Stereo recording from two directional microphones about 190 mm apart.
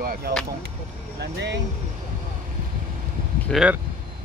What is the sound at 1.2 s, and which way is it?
Speech, 65° right (ahead or behind).